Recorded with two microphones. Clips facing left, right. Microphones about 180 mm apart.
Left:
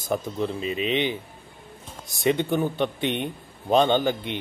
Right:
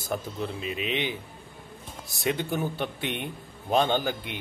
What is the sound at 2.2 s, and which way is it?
A man's voice, 5° right (ahead or behind).